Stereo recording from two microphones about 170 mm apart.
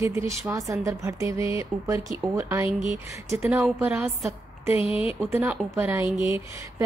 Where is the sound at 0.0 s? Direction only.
15° right (ahead or behind).